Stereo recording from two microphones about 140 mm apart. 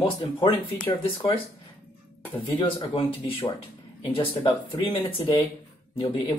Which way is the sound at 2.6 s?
40° left (ahead or behind).